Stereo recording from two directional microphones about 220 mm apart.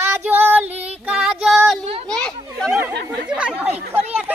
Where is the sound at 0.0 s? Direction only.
10° right (ahead or behind).